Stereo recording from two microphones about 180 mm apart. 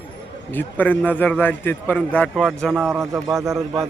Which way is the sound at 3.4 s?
15° right (ahead or behind).